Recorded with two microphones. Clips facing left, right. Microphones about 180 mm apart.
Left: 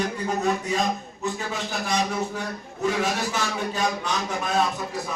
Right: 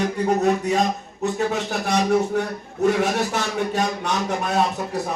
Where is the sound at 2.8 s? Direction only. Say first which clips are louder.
Right 5 dB; 65° right (ahead or behind).